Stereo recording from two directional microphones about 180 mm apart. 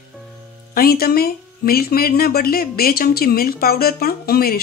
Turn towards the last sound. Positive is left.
turn(degrees=55)  # may be behind; listen again after turning